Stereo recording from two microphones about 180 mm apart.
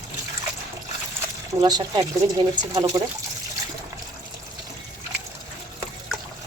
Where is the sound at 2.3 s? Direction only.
20° right (ahead or behind).